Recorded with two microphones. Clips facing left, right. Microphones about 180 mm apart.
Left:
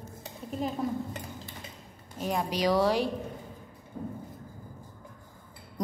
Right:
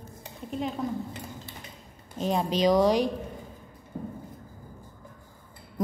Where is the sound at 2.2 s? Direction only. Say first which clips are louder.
Right 4 dB; 25° right (ahead or behind).